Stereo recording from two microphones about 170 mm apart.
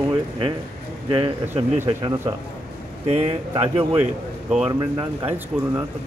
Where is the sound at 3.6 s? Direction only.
10° right (ahead or behind).